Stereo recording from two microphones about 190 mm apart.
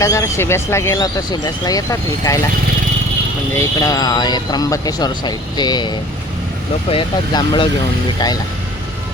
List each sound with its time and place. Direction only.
0.0 s speech: 15° left (ahead or behind)
3.5 s speech: 20° left (ahead or behind)
6.9 s speech: 25° left (ahead or behind)